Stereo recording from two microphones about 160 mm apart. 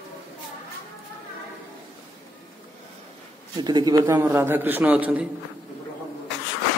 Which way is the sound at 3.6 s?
25° right (ahead or behind).